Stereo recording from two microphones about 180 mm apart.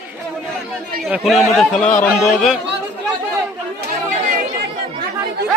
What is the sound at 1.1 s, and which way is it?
Speech, centre (ahead or behind).